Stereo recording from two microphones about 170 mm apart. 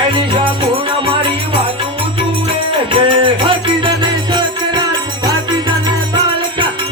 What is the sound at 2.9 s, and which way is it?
Music, 30° right (ahead or behind).